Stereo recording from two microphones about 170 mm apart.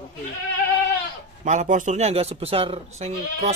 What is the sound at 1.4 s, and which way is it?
A man's voice, 45° right (ahead or behind).